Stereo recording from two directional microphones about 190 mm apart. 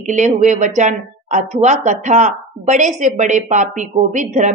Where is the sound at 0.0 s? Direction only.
40° right (ahead or behind).